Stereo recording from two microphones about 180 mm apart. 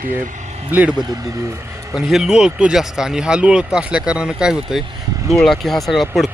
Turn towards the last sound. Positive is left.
turn(degrees=0)  # may be behind; listen again after turning